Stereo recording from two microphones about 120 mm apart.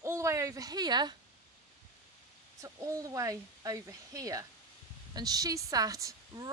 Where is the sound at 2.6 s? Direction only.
25° right (ahead or behind).